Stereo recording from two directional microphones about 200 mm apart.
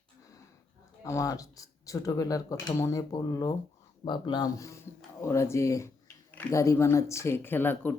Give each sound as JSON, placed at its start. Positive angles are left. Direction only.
{"t": 1.0, "sound": "speech", "side_deg": 15}